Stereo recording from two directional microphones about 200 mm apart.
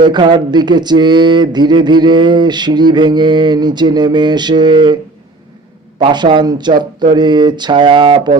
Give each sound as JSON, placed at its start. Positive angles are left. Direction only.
{"t": 0.0, "sound": "speech", "side_deg": -20}
{"t": 6.0, "sound": "speech", "side_deg": -25}